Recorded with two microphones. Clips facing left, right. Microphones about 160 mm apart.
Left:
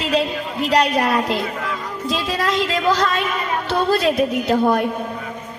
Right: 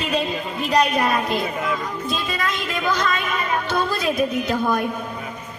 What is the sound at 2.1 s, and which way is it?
Speech, 85° left.